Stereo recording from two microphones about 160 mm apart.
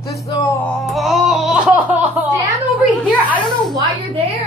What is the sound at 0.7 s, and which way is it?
Music, centre (ahead or behind).